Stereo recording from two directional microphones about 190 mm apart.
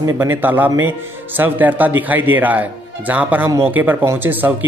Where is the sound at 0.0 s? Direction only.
15° right (ahead or behind).